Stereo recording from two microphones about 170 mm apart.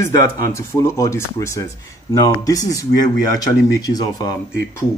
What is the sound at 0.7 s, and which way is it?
Speech, 20° left (ahead or behind).